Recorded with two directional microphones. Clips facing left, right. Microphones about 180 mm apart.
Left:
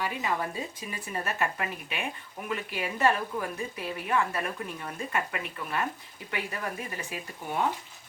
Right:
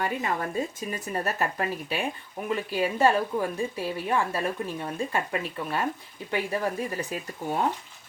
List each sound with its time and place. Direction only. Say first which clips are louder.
0.0 s a woman's voice: right 2 dB; 50° right (ahead or behind)